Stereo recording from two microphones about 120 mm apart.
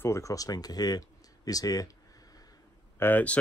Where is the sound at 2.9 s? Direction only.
15° left (ahead or behind).